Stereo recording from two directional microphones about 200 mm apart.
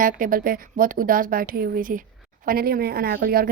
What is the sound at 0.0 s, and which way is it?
A woman's voice, 40° right (ahead or behind).